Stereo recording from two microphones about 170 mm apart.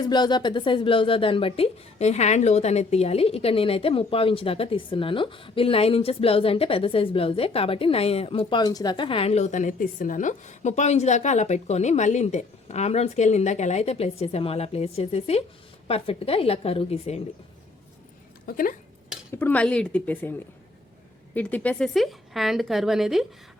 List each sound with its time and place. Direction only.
0.0 s a woman's voice: 25° left (ahead or behind)
18.4 s speech: 55° left (ahead or behind)
19.3 s speech: 10° left (ahead or behind)
21.3 s a woman's voice: 10° left (ahead or behind)